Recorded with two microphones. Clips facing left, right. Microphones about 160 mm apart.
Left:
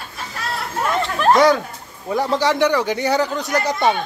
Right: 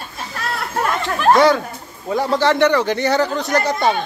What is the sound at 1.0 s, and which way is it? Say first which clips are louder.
Speech: right 1 dB; 5° right (ahead or behind).